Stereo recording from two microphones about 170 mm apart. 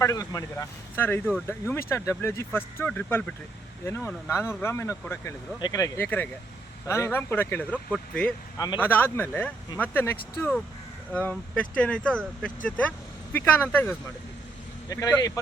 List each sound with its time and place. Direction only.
0.0 s speech: 20° left (ahead or behind)
8.5 s speech: 25° left (ahead or behind)
8.8 s speech: 10° left (ahead or behind)